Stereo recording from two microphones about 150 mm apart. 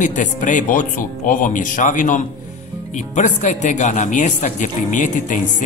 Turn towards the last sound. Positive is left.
turn(degrees=55)  # may be behind; listen again after turning